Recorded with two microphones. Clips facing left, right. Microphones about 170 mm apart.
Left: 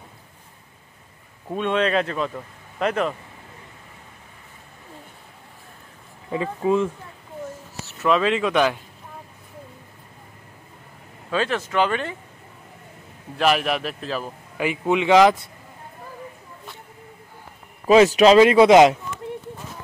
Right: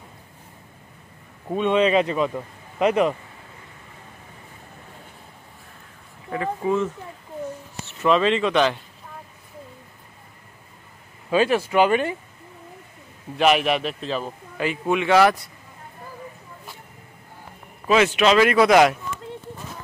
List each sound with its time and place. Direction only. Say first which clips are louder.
1.5 s speech: right 3 dB; 5° right (ahead or behind)
6.3 s speech: left 2 dB; 20° left (ahead or behind)
8.0 s a man's voice: right 1 dB; 5° left (ahead or behind)
11.2 s speech: right 4 dB; 10° right (ahead or behind)
13.4 s speech: right 2 dB; centre (ahead or behind)
14.6 s a man's voice: left 1 dB; 15° left (ahead or behind)
17.8 s a man's voice: left 5 dB; 35° left (ahead or behind)
18.4 s speech: left 2 dB; 25° left (ahead or behind)